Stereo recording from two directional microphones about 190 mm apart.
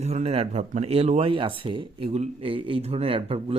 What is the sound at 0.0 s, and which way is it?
Speech, 35° right (ahead or behind).